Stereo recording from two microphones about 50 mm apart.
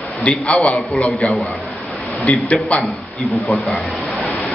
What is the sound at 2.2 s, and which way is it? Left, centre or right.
Speech, left.